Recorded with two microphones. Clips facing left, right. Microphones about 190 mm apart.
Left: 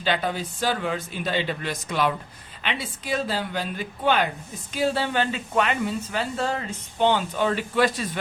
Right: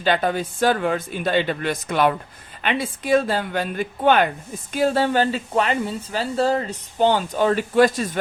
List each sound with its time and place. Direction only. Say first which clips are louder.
0.0 s a woman's voice: right 5 dB; 50° right (ahead or behind)